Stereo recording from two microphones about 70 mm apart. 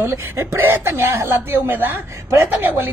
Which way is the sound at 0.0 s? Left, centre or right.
Right.